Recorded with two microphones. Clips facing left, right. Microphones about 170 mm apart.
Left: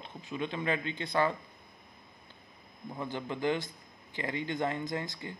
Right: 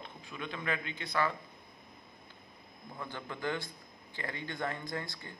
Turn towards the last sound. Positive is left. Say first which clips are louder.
# left 5 dB
turn(degrees=20)  # may be behind; listen again after turning